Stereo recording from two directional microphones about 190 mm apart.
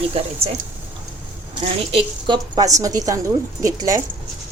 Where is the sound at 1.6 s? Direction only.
25° right (ahead or behind).